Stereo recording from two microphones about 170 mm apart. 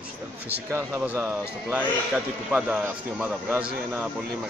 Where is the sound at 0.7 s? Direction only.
10° right (ahead or behind).